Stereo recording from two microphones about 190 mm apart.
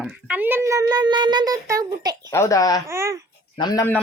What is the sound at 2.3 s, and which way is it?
Speech, 15° left (ahead or behind).